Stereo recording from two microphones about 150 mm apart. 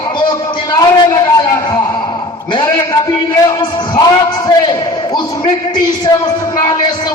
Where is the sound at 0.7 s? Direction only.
25° left (ahead or behind).